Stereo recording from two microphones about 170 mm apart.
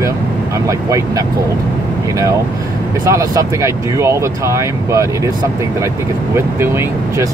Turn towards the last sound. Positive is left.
turn(degrees=-15)  # may be behind; listen again after turning